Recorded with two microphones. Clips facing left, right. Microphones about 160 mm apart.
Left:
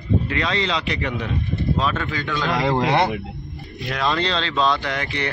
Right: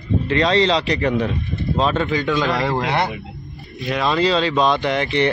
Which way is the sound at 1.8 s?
25° right (ahead or behind).